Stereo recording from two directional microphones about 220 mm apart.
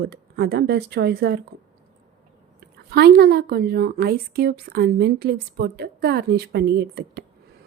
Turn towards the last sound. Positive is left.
turn(degrees=-50)  # may be behind; listen again after turning